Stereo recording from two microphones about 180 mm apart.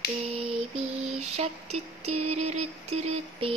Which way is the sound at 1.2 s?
35° right (ahead or behind).